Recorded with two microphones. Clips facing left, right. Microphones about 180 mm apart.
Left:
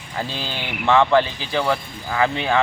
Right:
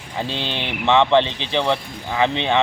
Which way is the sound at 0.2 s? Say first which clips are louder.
Right 2 dB; 25° right (ahead or behind).